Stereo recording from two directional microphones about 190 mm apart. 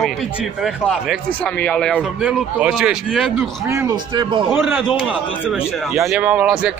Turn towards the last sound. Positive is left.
turn(degrees=-5)  # may be behind; listen again after turning